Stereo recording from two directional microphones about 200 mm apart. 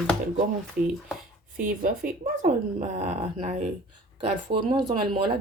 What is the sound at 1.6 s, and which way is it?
Speech, 45° right (ahead or behind).